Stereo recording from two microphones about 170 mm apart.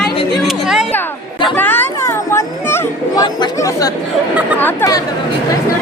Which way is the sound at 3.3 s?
25° left (ahead or behind).